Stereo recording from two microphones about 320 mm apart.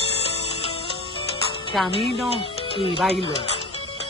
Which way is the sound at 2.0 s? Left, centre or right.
Centre.